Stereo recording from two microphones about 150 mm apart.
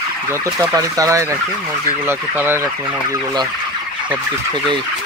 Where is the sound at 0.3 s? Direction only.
20° right (ahead or behind).